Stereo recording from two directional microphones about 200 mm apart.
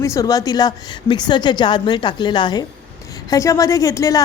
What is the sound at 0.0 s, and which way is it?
A woman's voice, 15° left (ahead or behind).